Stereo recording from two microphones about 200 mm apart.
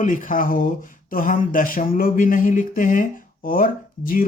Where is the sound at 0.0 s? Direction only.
40° left (ahead or behind).